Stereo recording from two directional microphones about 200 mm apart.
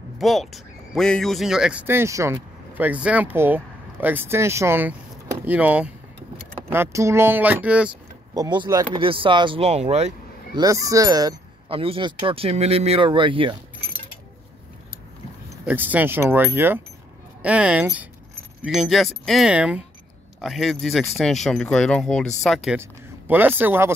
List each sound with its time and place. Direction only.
0.2 s speech: centre (ahead or behind)
8.4 s speech: 20° right (ahead or behind)
10.6 s speech: 15° right (ahead or behind)
15.6 s speech: 10° right (ahead or behind)
22.7 s speech: 10° right (ahead or behind)